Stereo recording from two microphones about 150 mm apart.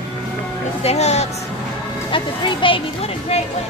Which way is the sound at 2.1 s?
35° left (ahead or behind).